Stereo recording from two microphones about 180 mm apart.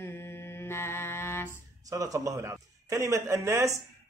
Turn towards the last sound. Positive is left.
turn(degrees=-15)  # may be behind; listen again after turning